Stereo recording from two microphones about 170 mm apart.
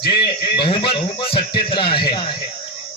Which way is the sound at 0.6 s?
30° left (ahead or behind).